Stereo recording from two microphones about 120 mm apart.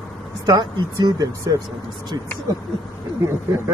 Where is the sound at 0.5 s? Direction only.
35° right (ahead or behind).